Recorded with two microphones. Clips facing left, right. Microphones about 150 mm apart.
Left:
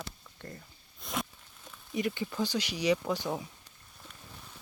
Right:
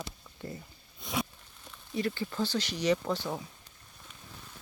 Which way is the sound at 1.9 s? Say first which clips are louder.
Even; 15° left (ahead or behind).